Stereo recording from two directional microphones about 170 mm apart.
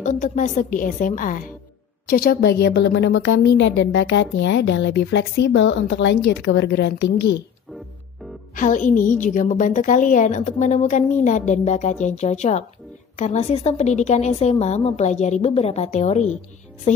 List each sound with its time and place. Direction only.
0.0 s a woman's voice: 45° left (ahead or behind); by 7.4 s 90° left
8.5 s a woman's voice: 50° left (ahead or behind)